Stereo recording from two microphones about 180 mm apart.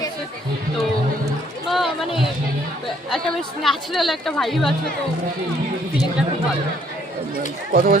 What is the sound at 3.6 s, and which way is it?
Speech, centre (ahead or behind).